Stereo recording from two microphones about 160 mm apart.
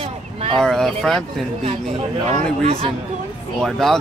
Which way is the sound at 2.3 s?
45° right (ahead or behind).